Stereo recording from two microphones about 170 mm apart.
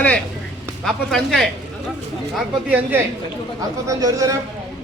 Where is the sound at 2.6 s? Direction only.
10° right (ahead or behind).